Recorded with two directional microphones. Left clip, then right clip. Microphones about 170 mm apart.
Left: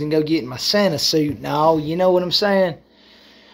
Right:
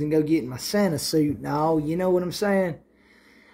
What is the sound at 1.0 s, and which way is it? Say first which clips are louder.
Speech: left 5 dB; 20° right (ahead or behind).